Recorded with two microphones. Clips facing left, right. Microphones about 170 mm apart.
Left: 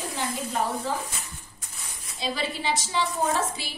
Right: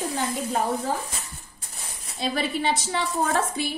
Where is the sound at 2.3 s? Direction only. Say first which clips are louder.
Right 4 dB; 55° right (ahead or behind).